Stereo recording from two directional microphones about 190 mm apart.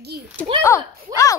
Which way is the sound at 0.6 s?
15° left (ahead or behind).